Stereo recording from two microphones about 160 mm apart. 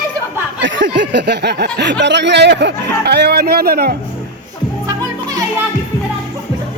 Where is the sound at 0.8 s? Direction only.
90° right.